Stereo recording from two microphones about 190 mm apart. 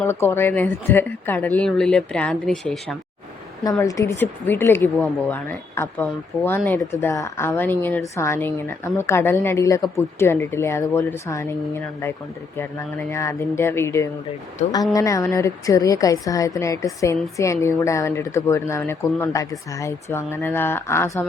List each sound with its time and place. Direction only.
0.0 s speech: 10° left (ahead or behind)
3.6 s speech: 20° left (ahead or behind)
14.6 s speech: 35° left (ahead or behind)
14.9 s speech: 15° left (ahead or behind)